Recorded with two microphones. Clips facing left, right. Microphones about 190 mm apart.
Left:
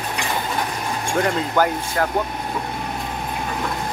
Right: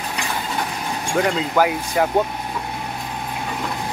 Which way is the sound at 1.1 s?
Centre (ahead or behind).